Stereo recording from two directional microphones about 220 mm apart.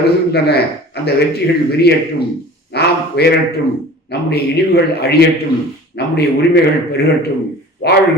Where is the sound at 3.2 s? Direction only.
45° left (ahead or behind).